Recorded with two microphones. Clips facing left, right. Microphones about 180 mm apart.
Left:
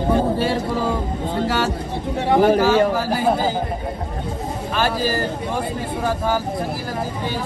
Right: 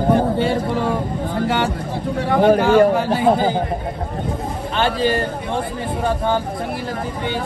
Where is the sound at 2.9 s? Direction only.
25° right (ahead or behind).